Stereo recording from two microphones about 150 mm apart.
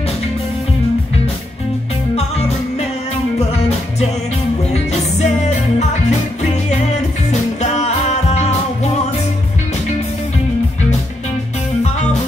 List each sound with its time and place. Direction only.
5.2 s music: 50° left (ahead or behind)
7.2 s music: 50° left (ahead or behind)
11.8 s music: 50° left (ahead or behind)